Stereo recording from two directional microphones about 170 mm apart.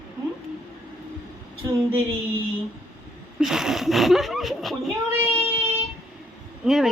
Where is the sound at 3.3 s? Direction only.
5° right (ahead or behind).